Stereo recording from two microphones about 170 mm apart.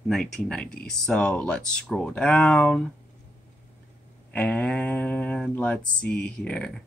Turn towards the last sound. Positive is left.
turn(degrees=5)  # may be behind; listen again after turning